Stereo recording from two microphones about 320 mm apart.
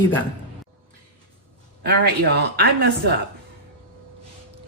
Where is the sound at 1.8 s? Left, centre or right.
Right.